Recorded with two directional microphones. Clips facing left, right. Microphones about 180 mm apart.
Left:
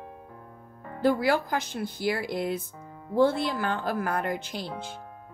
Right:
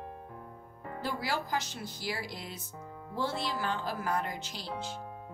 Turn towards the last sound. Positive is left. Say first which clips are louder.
# left 4 dB
turn(degrees=55)  # may be behind; listen again after turning